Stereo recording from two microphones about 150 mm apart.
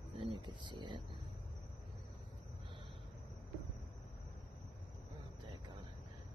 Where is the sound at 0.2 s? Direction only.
30° right (ahead or behind).